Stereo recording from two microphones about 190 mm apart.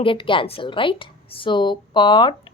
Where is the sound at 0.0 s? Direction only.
25° left (ahead or behind).